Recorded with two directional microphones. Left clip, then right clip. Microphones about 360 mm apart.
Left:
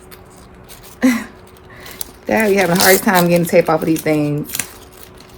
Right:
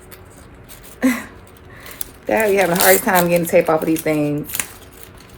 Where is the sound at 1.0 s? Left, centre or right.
Centre.